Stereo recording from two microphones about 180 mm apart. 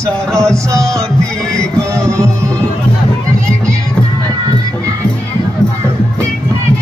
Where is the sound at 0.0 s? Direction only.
15° right (ahead or behind).